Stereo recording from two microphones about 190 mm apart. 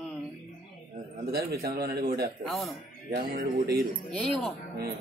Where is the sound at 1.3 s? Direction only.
55° right (ahead or behind).